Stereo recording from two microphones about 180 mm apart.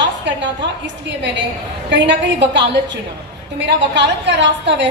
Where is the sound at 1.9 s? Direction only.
75° right (ahead or behind).